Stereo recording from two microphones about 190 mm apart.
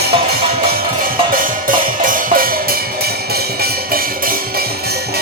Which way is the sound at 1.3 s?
45° right (ahead or behind).